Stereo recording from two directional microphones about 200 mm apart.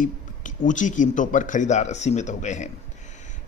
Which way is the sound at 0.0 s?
40° left (ahead or behind).